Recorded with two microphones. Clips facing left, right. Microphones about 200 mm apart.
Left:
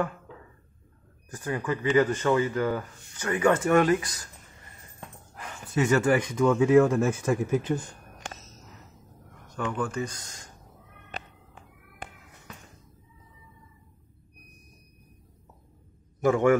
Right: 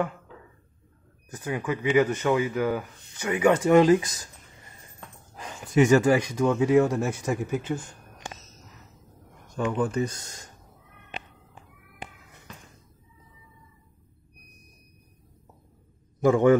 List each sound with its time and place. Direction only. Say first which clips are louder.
1.3 s speech: even; 10° right (ahead or behind)
5.3 s a sound: right 3 dB; 15° right (ahead or behind)
5.8 s speech: right 4 dB; 15° right (ahead or behind)
9.6 s speech: right 4 dB; 20° right (ahead or behind)
11.1 s a sound: even; 40° left (ahead or behind)
16.3 s speech: right 3 dB; 20° right (ahead or behind)